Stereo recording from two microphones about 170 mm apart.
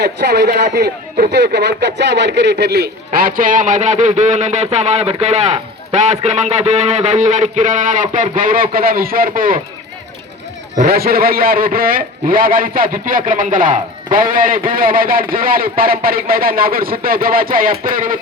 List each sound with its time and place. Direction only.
0.0 s speech: 80° right; by 9.6 s 55° right (ahead or behind)
10.8 s a man's voice: 60° right (ahead or behind)